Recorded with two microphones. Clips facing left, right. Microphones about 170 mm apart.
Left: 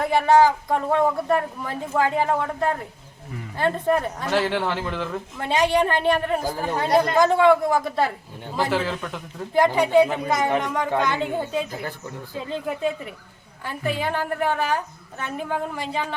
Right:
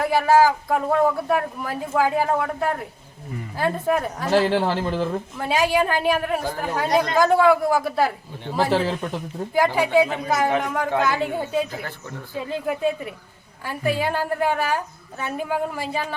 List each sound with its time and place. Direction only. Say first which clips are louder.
0.0 s a woman's voice: even; 5° right (ahead or behind)
4.3 s a man's voice: right 4 dB; 35° right (ahead or behind)
5.4 s speech: left 1 dB; 5° right (ahead or behind)
8.7 s a man's voice: right 3 dB; 30° right (ahead or behind)
9.7 s a woman's voice: left 1 dB; 5° right (ahead or behind)